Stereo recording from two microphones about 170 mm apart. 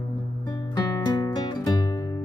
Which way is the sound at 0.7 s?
20° left (ahead or behind).